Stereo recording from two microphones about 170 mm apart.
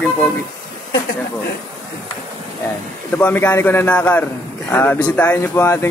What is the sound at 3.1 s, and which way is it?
Speech, 10° left (ahead or behind).